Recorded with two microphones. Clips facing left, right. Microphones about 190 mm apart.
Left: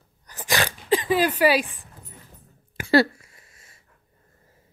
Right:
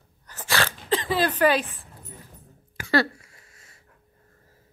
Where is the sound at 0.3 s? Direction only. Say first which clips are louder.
Left 1 dB; 15° left (ahead or behind).